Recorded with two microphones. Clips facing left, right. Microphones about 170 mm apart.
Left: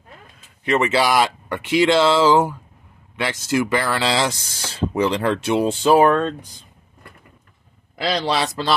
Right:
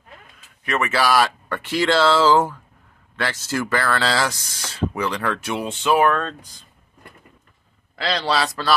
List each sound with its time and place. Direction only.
0.7 s speech: 25° left (ahead or behind)
7.9 s speech: 20° left (ahead or behind)